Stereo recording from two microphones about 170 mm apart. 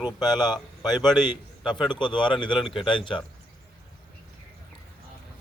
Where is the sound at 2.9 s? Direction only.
30° left (ahead or behind).